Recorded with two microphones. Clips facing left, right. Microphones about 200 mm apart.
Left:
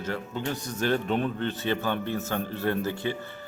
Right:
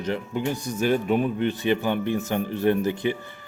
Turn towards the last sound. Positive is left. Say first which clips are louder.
# right 6 dB
turn(degrees=-15)  # may be behind; listen again after turning